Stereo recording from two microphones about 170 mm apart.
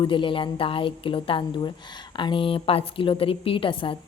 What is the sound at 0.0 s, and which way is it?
Speech, 30° left (ahead or behind).